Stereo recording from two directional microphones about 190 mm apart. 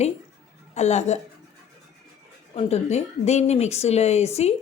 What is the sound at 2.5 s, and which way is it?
A woman's voice, 35° left (ahead or behind).